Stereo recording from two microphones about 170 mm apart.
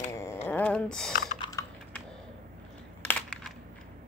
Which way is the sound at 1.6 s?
20° left (ahead or behind).